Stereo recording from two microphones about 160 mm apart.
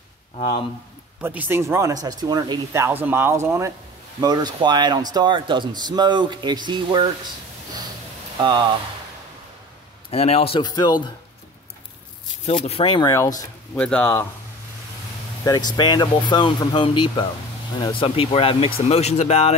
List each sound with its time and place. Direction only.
1.2 s speech: 10° right (ahead or behind); by 7.1 s 30° right (ahead or behind)
8.4 s speech: 30° right (ahead or behind)
10.1 s speech: 40° left (ahead or behind)
12.4 s speech: 40° left (ahead or behind)
13.7 s speech: 10° left (ahead or behind)
15.4 s speech: 25° left (ahead or behind); by 19.5 s 40° left (ahead or behind)